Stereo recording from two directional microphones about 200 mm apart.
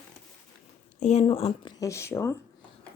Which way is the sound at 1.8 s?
15° left (ahead or behind).